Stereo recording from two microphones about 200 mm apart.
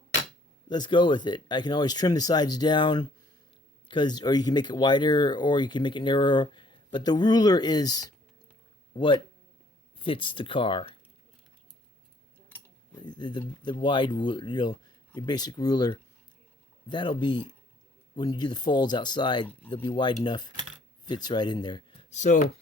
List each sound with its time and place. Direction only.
0.7 s speech: 20° left (ahead or behind)
10.0 s speech: 25° left (ahead or behind)
12.9 s speech: 20° left (ahead or behind)
22.1 s speech: 35° left (ahead or behind)